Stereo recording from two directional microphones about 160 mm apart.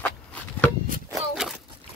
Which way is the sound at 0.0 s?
10° left (ahead or behind).